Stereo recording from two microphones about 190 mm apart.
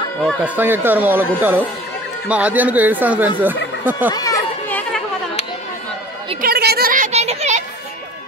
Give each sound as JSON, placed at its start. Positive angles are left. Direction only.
{"t": 0.2, "sound": "speech", "side_deg": -10}
{"t": 4.1, "sound": "children playing", "side_deg": 20}
{"t": 6.4, "sound": "a sound", "side_deg": -55}